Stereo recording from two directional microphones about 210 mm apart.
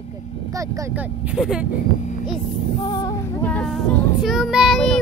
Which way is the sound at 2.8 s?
20° left (ahead or behind).